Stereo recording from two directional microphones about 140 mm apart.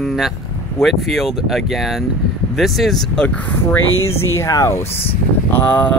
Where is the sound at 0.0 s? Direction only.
Centre (ahead or behind).